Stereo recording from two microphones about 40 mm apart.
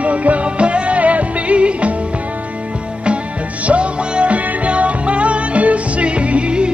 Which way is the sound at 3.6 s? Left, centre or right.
Right.